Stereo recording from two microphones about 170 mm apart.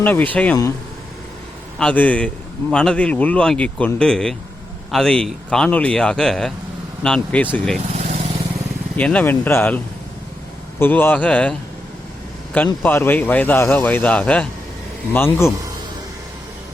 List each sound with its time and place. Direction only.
0.0 s a man's voice: 10° left (ahead or behind)
1.8 s a man's voice: 10° left (ahead or behind)
7.9 s vehicle: 40° right (ahead or behind)
9.0 s a man's voice: 10° left (ahead or behind)
12.8 s a man's voice: 10° left (ahead or behind)